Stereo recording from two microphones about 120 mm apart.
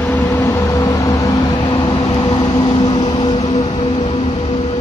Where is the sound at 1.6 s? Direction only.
40° left (ahead or behind).